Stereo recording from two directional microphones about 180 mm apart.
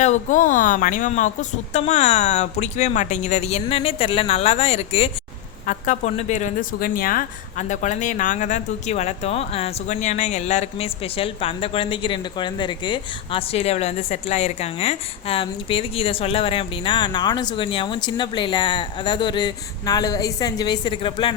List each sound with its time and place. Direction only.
0.0 s speech: 45° left (ahead or behind)
5.6 s speech: 45° left (ahead or behind); by 21.3 s 30° left (ahead or behind)